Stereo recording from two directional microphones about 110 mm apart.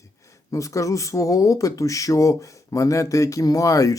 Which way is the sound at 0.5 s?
30° left (ahead or behind).